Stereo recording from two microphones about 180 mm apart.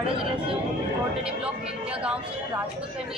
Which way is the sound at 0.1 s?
30° right (ahead or behind).